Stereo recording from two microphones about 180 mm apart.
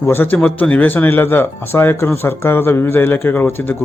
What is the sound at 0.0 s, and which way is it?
Speech, 10° left (ahead or behind).